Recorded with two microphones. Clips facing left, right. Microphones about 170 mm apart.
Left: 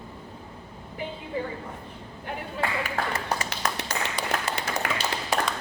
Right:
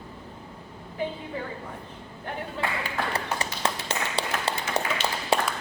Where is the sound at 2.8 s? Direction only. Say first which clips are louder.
Left 1 dB; 35° right (ahead or behind).